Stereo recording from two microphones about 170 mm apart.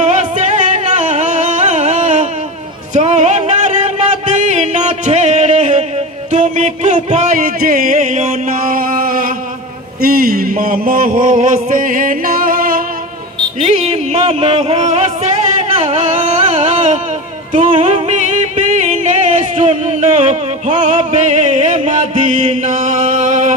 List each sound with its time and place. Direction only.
0.0 s music: 45° right (ahead or behind)
8.7 s a sound: 55° right (ahead or behind)
10.0 s music: 55° right (ahead or behind)
13.7 s a sound: 40° right (ahead or behind)
15.8 s music: 35° right (ahead or behind)
16.2 s music: 45° right (ahead or behind)